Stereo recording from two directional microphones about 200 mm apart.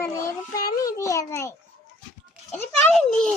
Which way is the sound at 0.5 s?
20° left (ahead or behind).